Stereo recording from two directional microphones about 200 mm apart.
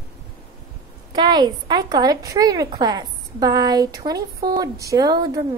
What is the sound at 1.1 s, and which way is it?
A woman's voice, 20° right (ahead or behind).